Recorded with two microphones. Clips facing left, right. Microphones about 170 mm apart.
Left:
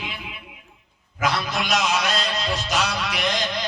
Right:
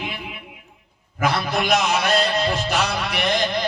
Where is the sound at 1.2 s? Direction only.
55° right (ahead or behind).